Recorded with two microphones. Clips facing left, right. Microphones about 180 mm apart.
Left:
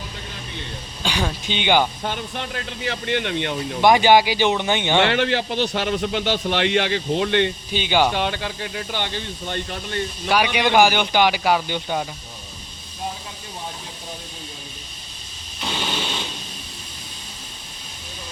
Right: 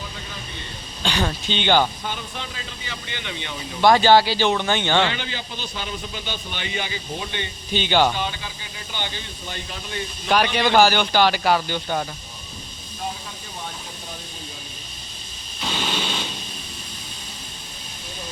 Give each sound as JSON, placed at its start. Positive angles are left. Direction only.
{"t": 1.0, "sound": "speech", "side_deg": 10}
{"t": 2.0, "sound": "speech", "side_deg": 60}
{"t": 3.8, "sound": "speech", "side_deg": 15}
{"t": 4.9, "sound": "a man's voice", "side_deg": 70}
{"t": 7.7, "sound": "speech", "side_deg": 10}
{"t": 8.1, "sound": "a man's voice", "side_deg": 70}
{"t": 10.2, "sound": "speech", "side_deg": 10}